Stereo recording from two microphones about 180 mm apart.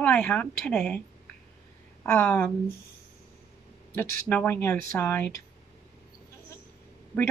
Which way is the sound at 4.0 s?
10° left (ahead or behind).